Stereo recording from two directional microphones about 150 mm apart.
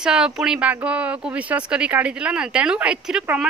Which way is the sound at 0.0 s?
5° right (ahead or behind).